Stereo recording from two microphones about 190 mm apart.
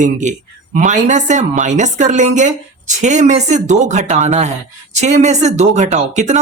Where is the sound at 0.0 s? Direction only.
40° right (ahead or behind).